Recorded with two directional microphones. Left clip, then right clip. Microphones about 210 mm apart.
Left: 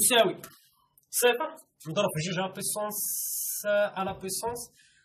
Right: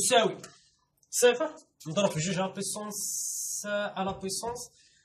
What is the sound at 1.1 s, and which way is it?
A woman's voice, 10° left (ahead or behind).